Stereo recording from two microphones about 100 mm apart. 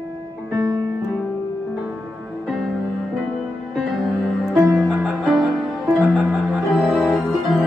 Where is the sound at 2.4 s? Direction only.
Centre (ahead or behind).